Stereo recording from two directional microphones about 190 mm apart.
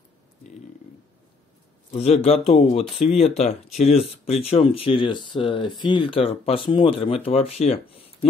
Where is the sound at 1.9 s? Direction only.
35° left (ahead or behind).